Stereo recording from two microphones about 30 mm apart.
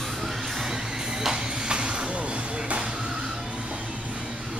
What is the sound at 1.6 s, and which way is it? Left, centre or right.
Vehicle, right.